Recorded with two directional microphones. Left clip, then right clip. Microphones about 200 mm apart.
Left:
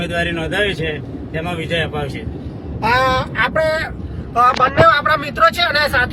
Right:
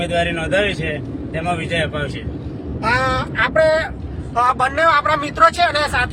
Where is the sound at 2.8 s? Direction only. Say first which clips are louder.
Left 3 dB; 25° left (ahead or behind).